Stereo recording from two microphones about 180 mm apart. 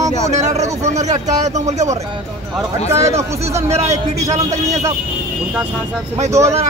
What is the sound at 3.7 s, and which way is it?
A man's voice, 35° right (ahead or behind).